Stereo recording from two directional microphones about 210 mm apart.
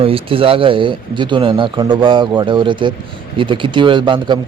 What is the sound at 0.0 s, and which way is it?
Speech, 25° right (ahead or behind).